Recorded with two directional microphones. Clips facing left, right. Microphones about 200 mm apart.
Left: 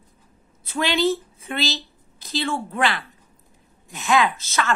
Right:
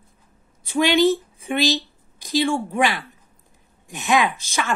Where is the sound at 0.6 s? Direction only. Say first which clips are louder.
Right 4 dB; 15° right (ahead or behind).